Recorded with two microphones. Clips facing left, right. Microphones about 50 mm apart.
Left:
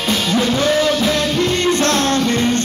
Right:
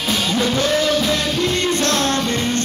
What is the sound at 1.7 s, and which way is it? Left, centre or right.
Music, left.